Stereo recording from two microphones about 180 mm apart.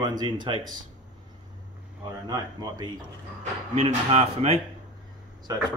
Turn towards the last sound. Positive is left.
turn(degrees=-20)  # may be behind; listen again after turning